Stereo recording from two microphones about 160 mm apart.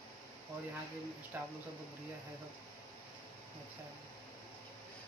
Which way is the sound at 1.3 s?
10° right (ahead or behind).